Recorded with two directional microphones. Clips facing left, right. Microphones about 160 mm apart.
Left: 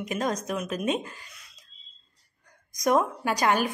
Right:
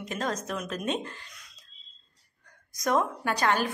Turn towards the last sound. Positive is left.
turn(degrees=10)  # may be behind; listen again after turning